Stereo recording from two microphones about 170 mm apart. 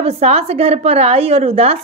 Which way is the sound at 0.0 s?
40° right (ahead or behind).